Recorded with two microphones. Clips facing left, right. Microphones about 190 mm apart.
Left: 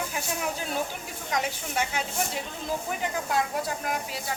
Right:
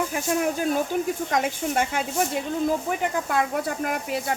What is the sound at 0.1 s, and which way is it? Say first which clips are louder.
Speech: right 7 dB; 50° right (ahead or behind).